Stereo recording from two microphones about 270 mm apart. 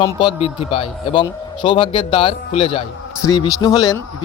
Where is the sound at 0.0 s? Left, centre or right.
Centre.